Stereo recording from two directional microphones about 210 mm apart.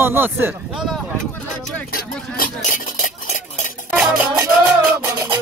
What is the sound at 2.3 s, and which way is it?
Speech, 40° left (ahead or behind).